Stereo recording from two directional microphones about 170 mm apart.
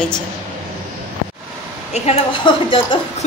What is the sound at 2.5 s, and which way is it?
Speech, 25° left (ahead or behind).